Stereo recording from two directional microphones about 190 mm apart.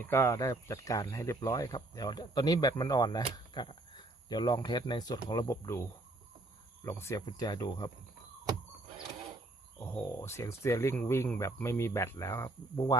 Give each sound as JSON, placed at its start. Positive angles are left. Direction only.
{"t": 0.0, "sound": "speech", "side_deg": 15}
{"t": 9.8, "sound": "speech", "side_deg": 15}